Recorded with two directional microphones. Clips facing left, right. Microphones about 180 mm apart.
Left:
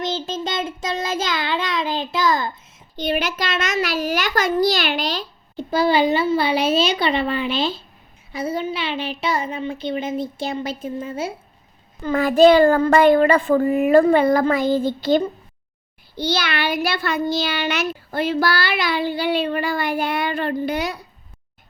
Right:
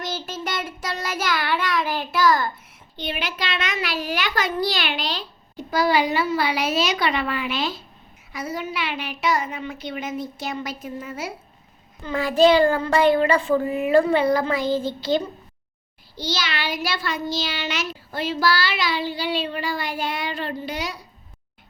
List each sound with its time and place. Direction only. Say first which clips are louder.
0.0 s child singing: left 5 dB; 25° left (ahead or behind)
2.9 s a child's voice: left 7 dB; 40° left (ahead or behind)
5.5 s a child's voice: left 3 dB; 25° left (ahead or behind)
12.0 s a child's voice: left 4 dB; 55° left (ahead or behind)